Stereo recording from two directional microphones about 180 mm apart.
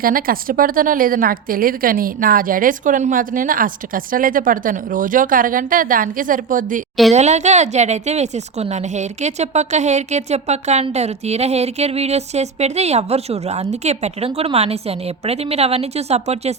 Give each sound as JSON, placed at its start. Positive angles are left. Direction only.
{"t": 0.0, "sound": "a woman's voice", "side_deg": -55}